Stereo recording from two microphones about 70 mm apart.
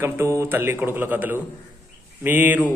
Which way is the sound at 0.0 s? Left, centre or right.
Right.